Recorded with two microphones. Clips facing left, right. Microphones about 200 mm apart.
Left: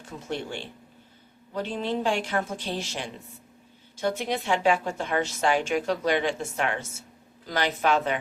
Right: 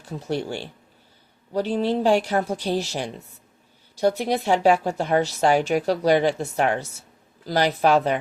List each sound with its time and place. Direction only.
0.0 s speech: 35° right (ahead or behind)